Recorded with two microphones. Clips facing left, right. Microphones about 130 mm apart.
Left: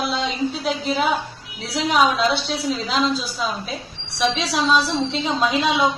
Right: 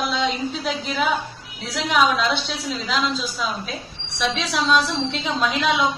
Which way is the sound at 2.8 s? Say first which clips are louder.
Right 1 dB; 40° left (ahead or behind).